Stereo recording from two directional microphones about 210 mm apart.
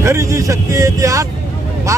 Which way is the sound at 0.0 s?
15° right (ahead or behind).